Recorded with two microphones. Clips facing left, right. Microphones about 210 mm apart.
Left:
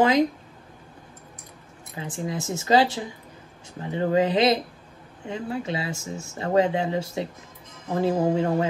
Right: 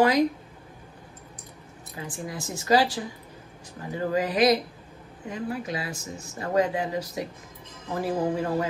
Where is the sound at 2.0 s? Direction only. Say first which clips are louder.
Left 5 dB; 25° left (ahead or behind).